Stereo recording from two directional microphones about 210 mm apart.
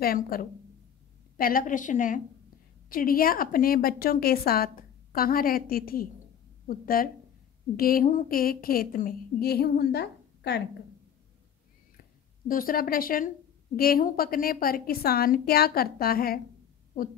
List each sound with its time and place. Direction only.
0.0 s a woman's voice: 45° left (ahead or behind)
12.4 s a woman's voice: 40° left (ahead or behind)